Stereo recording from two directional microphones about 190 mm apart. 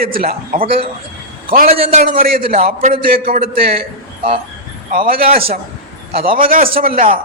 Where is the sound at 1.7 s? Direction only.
30° right (ahead or behind).